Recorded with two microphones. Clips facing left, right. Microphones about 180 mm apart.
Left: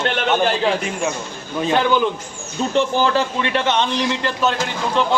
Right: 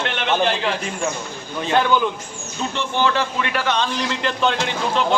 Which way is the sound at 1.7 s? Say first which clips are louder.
Left 1 dB; 15° left (ahead or behind).